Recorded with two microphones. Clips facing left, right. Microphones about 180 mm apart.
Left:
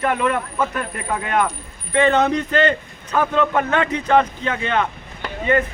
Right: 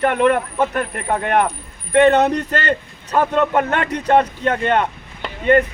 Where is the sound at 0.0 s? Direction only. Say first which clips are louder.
Right 4 dB; 55° right (ahead or behind).